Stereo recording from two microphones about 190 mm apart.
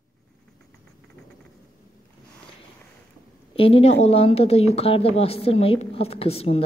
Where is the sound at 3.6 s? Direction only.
30° left (ahead or behind).